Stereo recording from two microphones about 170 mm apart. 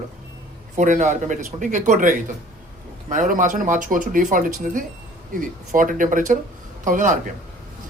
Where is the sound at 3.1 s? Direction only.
50° right (ahead or behind).